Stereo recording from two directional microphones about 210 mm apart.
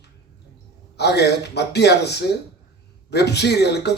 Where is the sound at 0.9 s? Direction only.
50° left (ahead or behind).